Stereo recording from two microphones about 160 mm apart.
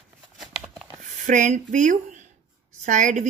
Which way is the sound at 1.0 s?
50° right (ahead or behind).